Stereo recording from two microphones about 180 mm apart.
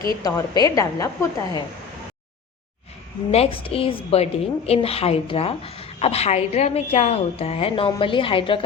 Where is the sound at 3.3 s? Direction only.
35° left (ahead or behind).